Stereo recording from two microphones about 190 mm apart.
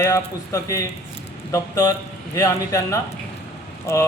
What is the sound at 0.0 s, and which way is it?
A man's voice, 15° left (ahead or behind).